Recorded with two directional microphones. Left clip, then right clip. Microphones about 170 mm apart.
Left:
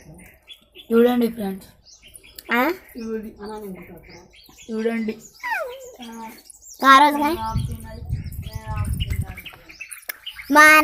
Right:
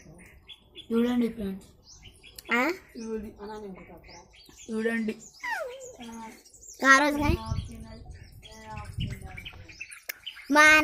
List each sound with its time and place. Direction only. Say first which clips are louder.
0.9 s speech: left 11 dB; 40° left (ahead or behind)
2.3 s speech: left 6 dB; centre (ahead or behind)
4.7 s speech: left 5 dB; 30° right (ahead or behind)
5.4 s a sound: left 7 dB; 5° left (ahead or behind)
6.7 s a child's voice: left 8 dB; centre (ahead or behind)
10.1 s bird: left 7 dB; centre (ahead or behind)